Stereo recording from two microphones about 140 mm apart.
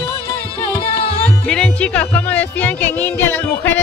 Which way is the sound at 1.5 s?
5° left (ahead or behind).